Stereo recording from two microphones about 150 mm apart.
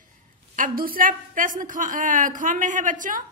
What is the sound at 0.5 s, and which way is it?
A woman's voice, 70° right (ahead or behind).